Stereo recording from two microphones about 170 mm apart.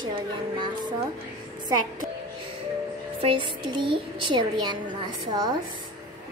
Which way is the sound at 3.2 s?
30° right (ahead or behind).